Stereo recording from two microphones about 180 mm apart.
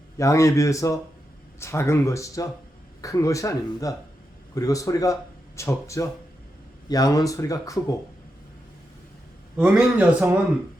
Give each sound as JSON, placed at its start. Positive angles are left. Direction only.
{"t": 0.2, "sound": "speech", "side_deg": 15}
{"t": 9.6, "sound": "a man's voice", "side_deg": -5}